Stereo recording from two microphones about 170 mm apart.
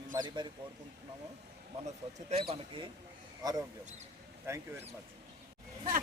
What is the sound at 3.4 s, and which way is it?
Speech, 20° right (ahead or behind).